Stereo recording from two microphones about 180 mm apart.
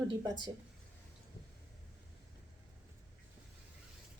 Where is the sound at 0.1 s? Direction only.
25° right (ahead or behind).